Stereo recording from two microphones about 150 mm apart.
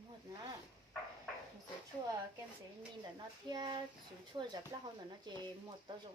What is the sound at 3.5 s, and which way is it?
Speech, 30° right (ahead or behind).